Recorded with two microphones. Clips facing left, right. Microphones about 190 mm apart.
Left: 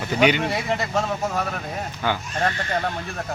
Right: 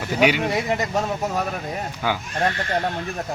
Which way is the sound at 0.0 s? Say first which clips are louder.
Even; 5° right (ahead or behind).